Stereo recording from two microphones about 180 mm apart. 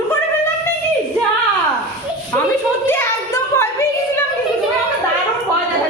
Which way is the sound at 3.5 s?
15° left (ahead or behind).